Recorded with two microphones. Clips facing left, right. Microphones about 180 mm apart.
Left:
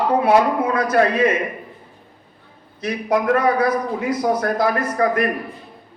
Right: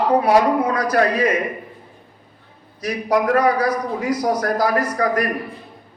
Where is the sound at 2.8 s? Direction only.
25° left (ahead or behind).